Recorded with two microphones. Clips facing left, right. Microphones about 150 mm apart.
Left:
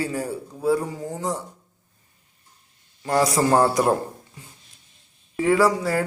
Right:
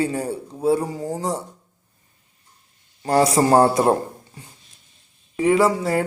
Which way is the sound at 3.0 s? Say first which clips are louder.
Right 3 dB; 30° right (ahead or behind).